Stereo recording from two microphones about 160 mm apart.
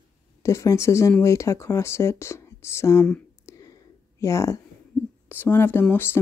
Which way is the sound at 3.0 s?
10° left (ahead or behind).